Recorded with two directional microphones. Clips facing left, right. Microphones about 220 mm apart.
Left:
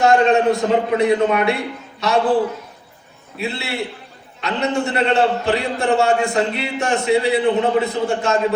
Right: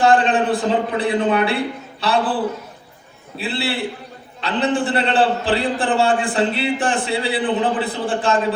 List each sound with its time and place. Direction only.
0.0 s a man's voice: 30° right (ahead or behind)
3.3 s a man's voice: 30° right (ahead or behind)